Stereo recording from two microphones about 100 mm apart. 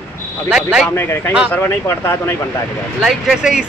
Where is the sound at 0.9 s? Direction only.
25° left (ahead or behind).